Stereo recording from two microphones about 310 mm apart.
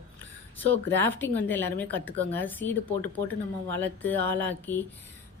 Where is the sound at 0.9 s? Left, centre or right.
Centre.